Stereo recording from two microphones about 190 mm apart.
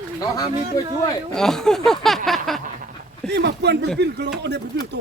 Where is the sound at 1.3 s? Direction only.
Centre (ahead or behind).